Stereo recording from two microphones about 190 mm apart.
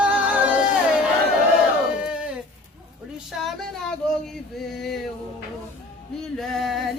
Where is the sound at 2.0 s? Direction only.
5° right (ahead or behind).